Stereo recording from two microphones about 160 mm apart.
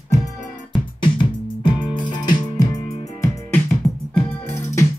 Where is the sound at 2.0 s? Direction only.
30° left (ahead or behind).